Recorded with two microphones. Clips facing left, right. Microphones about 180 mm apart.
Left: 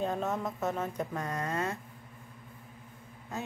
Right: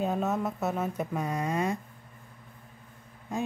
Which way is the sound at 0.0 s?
10° right (ahead or behind).